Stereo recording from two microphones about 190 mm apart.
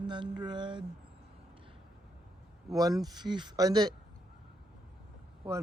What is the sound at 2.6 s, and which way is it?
Speech, 20° right (ahead or behind).